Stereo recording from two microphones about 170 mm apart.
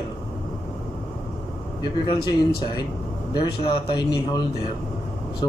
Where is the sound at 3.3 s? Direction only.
30° left (ahead or behind).